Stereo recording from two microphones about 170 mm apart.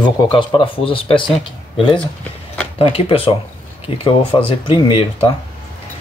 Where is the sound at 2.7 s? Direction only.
30° left (ahead or behind).